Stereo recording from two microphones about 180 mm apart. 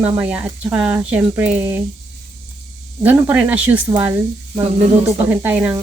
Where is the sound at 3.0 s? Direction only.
10° right (ahead or behind).